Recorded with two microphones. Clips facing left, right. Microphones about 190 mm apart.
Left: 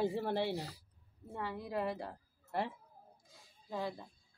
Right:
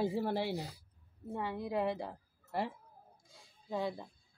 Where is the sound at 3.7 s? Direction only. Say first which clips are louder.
Right 3 dB; 20° right (ahead or behind).